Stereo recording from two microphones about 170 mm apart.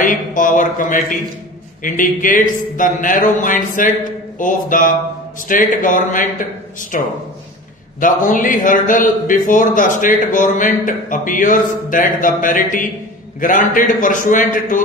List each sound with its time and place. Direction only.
0.0 s a man's voice: 50° left (ahead or behind)